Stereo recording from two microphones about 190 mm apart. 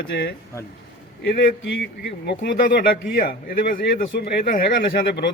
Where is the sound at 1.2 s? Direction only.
70° left (ahead or behind).